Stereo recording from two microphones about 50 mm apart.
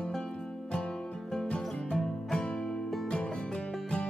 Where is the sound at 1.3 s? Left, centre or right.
Centre.